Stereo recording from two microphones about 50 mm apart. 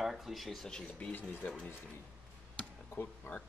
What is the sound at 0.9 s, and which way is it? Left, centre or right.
Speech, left.